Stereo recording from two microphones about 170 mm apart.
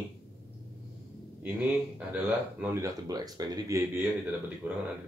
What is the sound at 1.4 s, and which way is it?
Speech, 10° right (ahead or behind).